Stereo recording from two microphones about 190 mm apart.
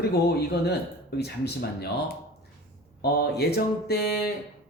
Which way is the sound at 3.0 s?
55° left (ahead or behind).